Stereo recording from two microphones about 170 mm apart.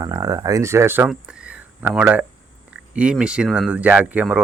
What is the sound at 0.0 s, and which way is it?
Speech, 20° right (ahead or behind).